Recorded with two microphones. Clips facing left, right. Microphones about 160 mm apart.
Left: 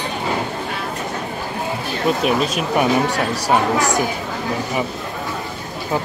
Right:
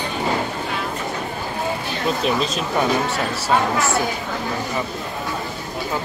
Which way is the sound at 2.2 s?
10° left (ahead or behind).